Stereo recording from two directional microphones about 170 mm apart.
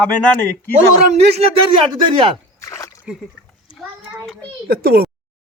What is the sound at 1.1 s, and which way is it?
A man's voice, 40° right (ahead or behind).